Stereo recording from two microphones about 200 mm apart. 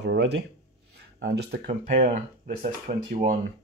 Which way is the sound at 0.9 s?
55° right (ahead or behind).